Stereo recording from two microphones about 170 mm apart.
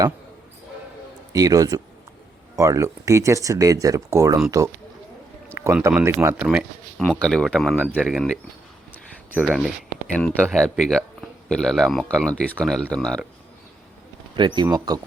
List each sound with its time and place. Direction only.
1.3 s speech: 20° right (ahead or behind)
5.5 s speech: 15° right (ahead or behind)
7.1 s speech: 5° left (ahead or behind)
9.4 s a man's voice: 5° right (ahead or behind)
14.3 s speech: 25° right (ahead or behind)